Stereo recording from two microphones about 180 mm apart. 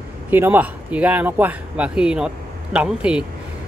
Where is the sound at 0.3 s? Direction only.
10° right (ahead or behind).